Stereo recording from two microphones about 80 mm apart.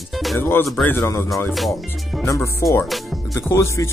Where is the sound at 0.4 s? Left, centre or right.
Left.